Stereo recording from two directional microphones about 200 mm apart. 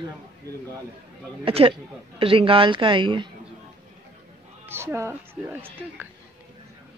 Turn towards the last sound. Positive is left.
turn(degrees=-10)  # may be behind; listen again after turning